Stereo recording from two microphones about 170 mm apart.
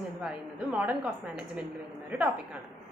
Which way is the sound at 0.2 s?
5° right (ahead or behind).